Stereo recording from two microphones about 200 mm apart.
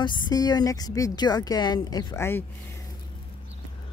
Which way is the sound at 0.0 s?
20° left (ahead or behind).